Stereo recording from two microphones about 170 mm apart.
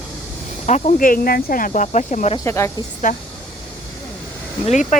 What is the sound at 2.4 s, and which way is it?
Speech, 15° left (ahead or behind).